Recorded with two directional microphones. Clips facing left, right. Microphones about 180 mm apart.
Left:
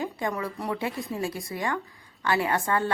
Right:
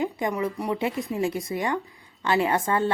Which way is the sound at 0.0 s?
20° right (ahead or behind).